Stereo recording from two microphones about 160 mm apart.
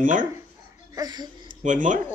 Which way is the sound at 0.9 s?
25° right (ahead or behind).